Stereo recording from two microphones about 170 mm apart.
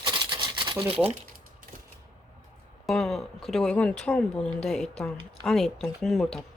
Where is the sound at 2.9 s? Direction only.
Centre (ahead or behind).